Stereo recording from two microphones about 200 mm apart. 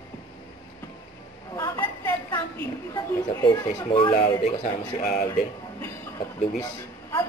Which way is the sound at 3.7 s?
25° left (ahead or behind).